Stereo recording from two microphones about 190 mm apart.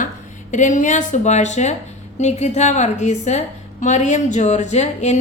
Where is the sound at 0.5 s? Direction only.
40° left (ahead or behind).